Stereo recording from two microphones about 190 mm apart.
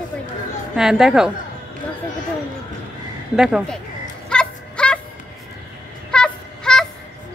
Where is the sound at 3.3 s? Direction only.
5° right (ahead or behind).